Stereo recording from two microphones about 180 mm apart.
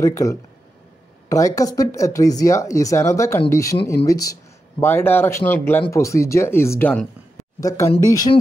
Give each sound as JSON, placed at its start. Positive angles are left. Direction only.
{"t": 0.0, "sound": "speech", "side_deg": 15}